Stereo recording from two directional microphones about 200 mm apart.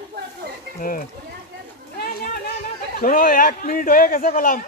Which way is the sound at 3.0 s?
45° left (ahead or behind).